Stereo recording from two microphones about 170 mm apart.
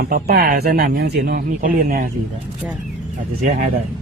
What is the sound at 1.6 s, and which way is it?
Speech, 50° right (ahead or behind).